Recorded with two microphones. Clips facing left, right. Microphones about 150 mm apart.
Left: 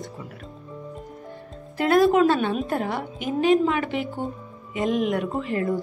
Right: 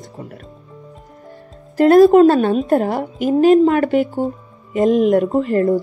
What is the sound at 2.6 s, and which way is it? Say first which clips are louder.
A woman's voice: right 10 dB; 45° right (ahead or behind).